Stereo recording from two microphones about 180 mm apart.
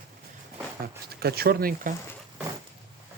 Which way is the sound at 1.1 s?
60° right (ahead or behind).